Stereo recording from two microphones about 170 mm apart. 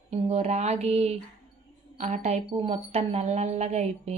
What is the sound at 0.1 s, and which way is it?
A woman's voice, 40° right (ahead or behind).